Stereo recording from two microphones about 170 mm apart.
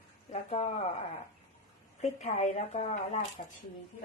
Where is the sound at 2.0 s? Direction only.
40° left (ahead or behind).